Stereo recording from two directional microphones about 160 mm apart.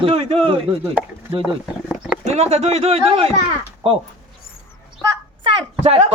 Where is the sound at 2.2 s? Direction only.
45° right (ahead or behind).